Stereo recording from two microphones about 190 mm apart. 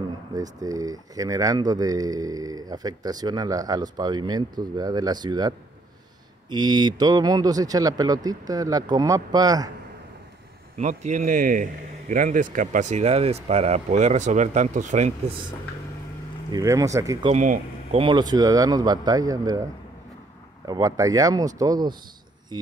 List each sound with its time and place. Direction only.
0.4 s speech: 20° right (ahead or behind)
6.5 s speech: 20° right (ahead or behind)
10.8 s speech: 40° right (ahead or behind)
16.5 s speech: 15° right (ahead or behind)
17.3 s speech: 35° right (ahead or behind)
18.0 s speech: 20° right (ahead or behind)
20.6 s speech: 20° right (ahead or behind)